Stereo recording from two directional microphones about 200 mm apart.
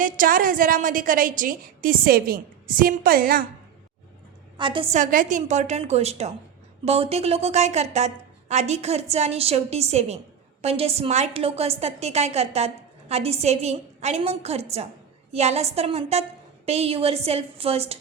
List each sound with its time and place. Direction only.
0.0 s a woman's voice: 45° right (ahead or behind)
4.5 s a woman's voice: 25° right (ahead or behind)
4.9 s a woman's voice: 40° right (ahead or behind)